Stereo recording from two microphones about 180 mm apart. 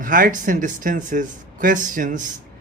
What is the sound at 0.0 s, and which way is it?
Speech, 50° right (ahead or behind).